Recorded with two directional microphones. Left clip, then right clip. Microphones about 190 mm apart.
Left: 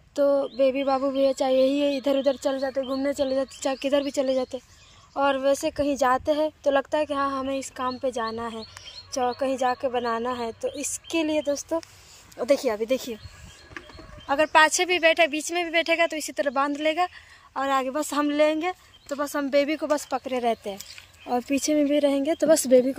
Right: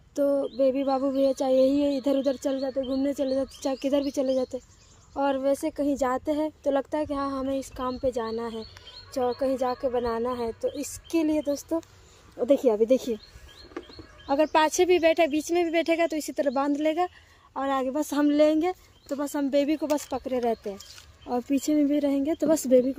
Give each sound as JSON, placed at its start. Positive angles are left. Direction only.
{"t": 0.1, "sound": "a woman's voice", "side_deg": -5}
{"t": 12.6, "sound": "speech", "side_deg": -45}
{"t": 14.3, "sound": "speech", "side_deg": -40}
{"t": 17.6, "sound": "a woman's voice", "side_deg": -5}
{"t": 20.9, "sound": "a sound", "side_deg": 0}
{"t": 21.5, "sound": "a woman's voice", "side_deg": -10}